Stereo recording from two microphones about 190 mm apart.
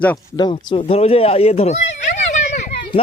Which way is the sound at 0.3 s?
25° left (ahead or behind).